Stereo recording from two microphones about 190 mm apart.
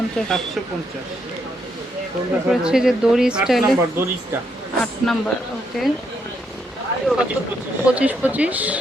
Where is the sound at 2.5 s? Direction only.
5° right (ahead or behind).